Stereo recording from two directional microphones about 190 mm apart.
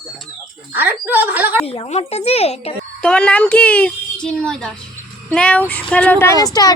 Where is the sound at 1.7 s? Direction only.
35° left (ahead or behind).